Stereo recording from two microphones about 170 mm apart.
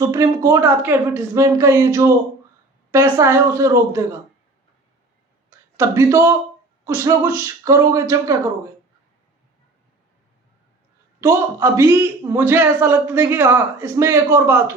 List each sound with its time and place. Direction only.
0.0 s a man's voice: 20° right (ahead or behind)
5.7 s a man's voice: 15° right (ahead or behind)
11.2 s a man's voice: 15° right (ahead or behind)